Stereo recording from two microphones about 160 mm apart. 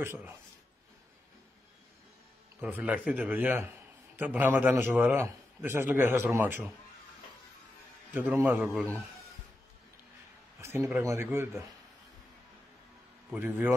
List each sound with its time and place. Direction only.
0.0 s a man's voice: 15° right (ahead or behind)
2.6 s a man's voice: 10° right (ahead or behind)
8.1 s a man's voice: 15° right (ahead or behind)
10.6 s a man's voice: 15° right (ahead or behind)
13.3 s a man's voice: 10° right (ahead or behind)